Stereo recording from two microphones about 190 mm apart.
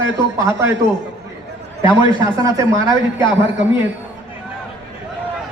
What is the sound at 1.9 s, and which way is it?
Speech, 25° left (ahead or behind).